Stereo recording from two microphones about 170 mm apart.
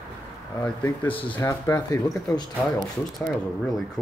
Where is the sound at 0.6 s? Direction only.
10° left (ahead or behind).